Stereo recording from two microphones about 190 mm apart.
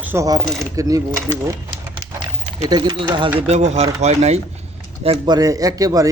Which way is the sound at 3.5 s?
35° right (ahead or behind).